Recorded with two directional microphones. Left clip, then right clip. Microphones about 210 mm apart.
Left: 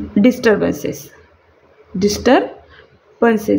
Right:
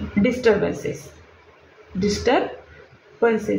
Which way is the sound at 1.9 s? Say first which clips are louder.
Left 6 dB; 60° left (ahead or behind).